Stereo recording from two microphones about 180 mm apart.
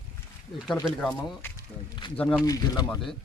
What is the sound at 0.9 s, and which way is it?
Speech, 5° right (ahead or behind).